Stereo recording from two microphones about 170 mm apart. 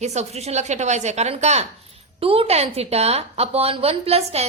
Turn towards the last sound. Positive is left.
turn(degrees=-35)  # may be behind; listen again after turning